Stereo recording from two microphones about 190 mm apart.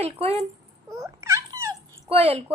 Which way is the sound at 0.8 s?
15° right (ahead or behind).